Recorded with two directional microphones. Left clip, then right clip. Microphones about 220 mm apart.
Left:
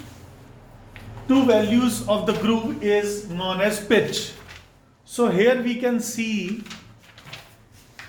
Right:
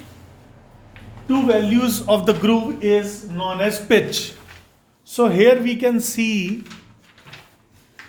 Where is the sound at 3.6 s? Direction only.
30° right (ahead or behind); by 6.5 s 45° right (ahead or behind).